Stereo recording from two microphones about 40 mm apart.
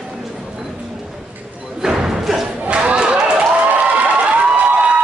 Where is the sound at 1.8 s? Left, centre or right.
Centre.